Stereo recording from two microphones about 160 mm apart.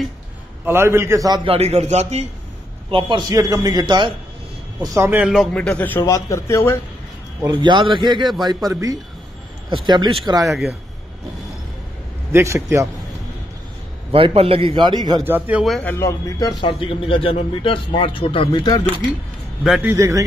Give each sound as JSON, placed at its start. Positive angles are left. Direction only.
{"t": 0.7, "sound": "a man's voice", "side_deg": -15}
{"t": 1.4, "sound": "a man's voice", "side_deg": -40}
{"t": 2.9, "sound": "a man's voice", "side_deg": -30}
{"t": 4.8, "sound": "a man's voice", "side_deg": -15}
{"t": 5.5, "sound": "a man's voice", "side_deg": 5}
{"t": 7.4, "sound": "a man's voice", "side_deg": -30}
{"t": 12.3, "sound": "a man's voice", "side_deg": -15}
{"t": 14.1, "sound": "a man's voice", "side_deg": -35}
{"t": 15.2, "sound": "a man's voice", "side_deg": -10}
{"t": 15.8, "sound": "speech", "side_deg": 15}
{"t": 17.0, "sound": "speech", "side_deg": 35}
{"t": 19.6, "sound": "a man's voice", "side_deg": -5}
{"t": 19.9, "sound": "a man's voice", "side_deg": -20}